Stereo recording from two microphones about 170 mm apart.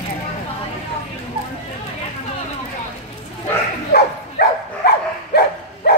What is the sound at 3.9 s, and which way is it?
Dog, 65° left (ahead or behind).